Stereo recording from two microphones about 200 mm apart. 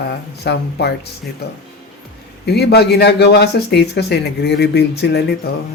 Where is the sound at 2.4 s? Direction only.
55° left (ahead or behind).